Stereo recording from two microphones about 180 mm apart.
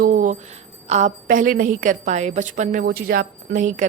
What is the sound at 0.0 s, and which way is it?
Music, 45° right (ahead or behind).